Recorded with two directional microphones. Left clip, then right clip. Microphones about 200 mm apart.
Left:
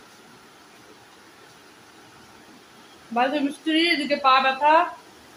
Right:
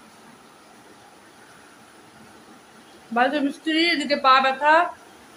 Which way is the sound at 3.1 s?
Centre (ahead or behind).